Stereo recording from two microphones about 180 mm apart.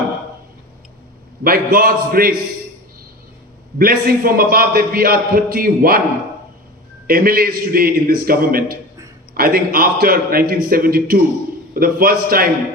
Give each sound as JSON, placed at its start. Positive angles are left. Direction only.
{"t": 1.5, "sound": "a man's voice", "side_deg": -55}
{"t": 3.8, "sound": "a man's voice", "side_deg": -55}
{"t": 7.1, "sound": "a man's voice", "side_deg": -55}